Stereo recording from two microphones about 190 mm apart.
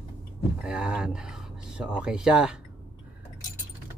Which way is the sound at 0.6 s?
5° right (ahead or behind).